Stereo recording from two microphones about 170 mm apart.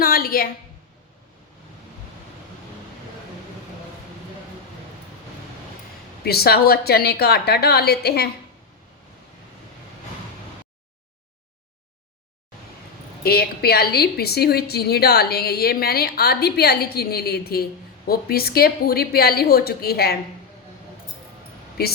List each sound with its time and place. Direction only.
0.0 s a sound: 60° left (ahead or behind)
6.2 s a woman's voice: 65° left (ahead or behind)
13.2 s a woman's voice: 65° left (ahead or behind)